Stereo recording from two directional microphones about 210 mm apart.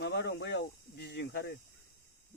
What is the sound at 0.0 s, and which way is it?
Snake, 50° left (ahead or behind).